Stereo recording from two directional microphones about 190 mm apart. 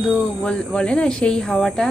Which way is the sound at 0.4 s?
5° left (ahead or behind).